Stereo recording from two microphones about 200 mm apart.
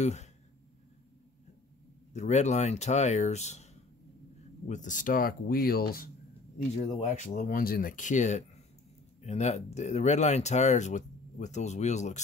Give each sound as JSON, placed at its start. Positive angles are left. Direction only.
{"t": 0.0, "sound": "speech", "side_deg": 35}
{"t": 2.1, "sound": "speech", "side_deg": 35}
{"t": 4.6, "sound": "speech", "side_deg": 40}
{"t": 6.8, "sound": "speech", "side_deg": 35}